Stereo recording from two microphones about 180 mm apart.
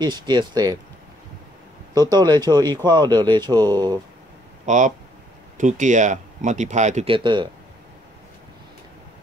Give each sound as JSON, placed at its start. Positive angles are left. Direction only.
{"t": 0.0, "sound": "speech", "side_deg": -25}
{"t": 2.0, "sound": "speech", "side_deg": -20}
{"t": 4.6, "sound": "speech", "side_deg": -45}